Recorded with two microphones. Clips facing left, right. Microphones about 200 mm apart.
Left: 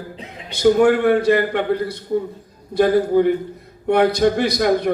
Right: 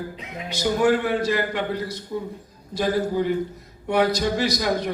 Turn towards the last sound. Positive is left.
turn(degrees=60)  # may be behind; listen again after turning